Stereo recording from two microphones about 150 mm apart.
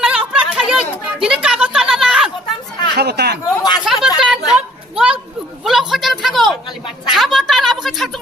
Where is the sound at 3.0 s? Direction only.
90° right.